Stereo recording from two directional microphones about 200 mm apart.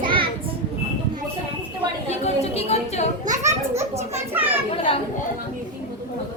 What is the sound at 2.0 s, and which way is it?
Chatter, 30° left (ahead or behind).